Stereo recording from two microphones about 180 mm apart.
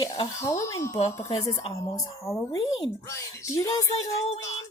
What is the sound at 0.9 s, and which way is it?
Speech, 35° left (ahead or behind).